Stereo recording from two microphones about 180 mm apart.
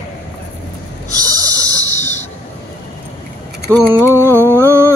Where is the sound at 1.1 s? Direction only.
20° right (ahead or behind).